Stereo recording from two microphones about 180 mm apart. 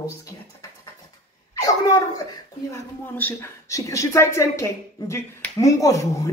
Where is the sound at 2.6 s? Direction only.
10° left (ahead or behind).